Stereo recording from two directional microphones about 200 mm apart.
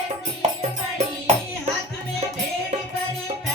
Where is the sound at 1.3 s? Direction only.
35° right (ahead or behind).